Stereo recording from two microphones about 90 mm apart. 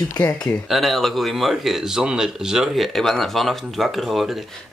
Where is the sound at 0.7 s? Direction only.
Centre (ahead or behind).